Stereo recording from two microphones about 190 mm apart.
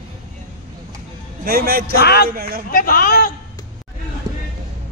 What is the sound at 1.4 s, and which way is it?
Speech, 50° right (ahead or behind).